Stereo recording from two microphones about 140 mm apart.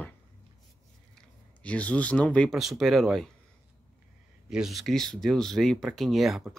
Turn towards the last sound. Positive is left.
turn(degrees=0)  # may be behind; listen again after turning